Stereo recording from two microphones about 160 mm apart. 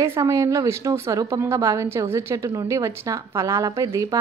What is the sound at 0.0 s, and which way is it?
A woman's voice, 20° right (ahead or behind).